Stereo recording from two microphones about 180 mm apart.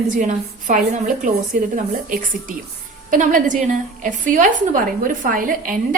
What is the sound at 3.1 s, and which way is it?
A woman's voice, 45° right (ahead or behind).